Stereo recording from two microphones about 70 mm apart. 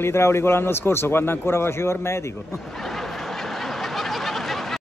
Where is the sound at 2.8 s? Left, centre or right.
Centre.